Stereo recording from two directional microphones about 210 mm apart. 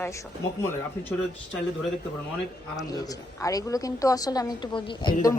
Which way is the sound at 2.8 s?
15° left (ahead or behind).